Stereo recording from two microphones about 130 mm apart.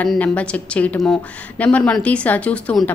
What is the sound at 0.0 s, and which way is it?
A woman's voice, 10° left (ahead or behind).